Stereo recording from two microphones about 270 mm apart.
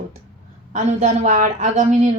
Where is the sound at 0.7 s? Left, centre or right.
Right.